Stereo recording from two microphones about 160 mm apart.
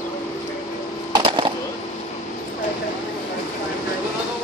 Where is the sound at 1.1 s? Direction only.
30° right (ahead or behind).